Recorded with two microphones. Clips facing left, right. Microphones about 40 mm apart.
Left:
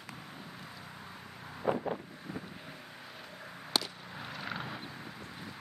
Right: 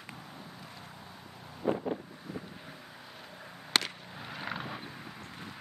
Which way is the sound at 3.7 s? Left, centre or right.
Right.